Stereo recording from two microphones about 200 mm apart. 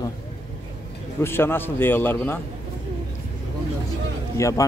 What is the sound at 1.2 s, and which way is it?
Speech, 10° left (ahead or behind).